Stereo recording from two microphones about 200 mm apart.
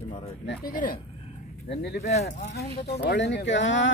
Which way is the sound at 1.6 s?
55° left (ahead or behind).